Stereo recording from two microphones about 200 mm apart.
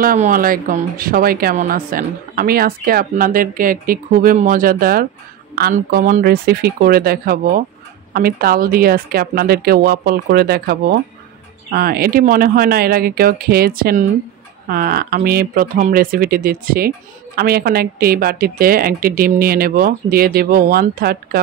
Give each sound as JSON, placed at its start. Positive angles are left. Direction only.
{"t": 0.0, "sound": "speech", "side_deg": -40}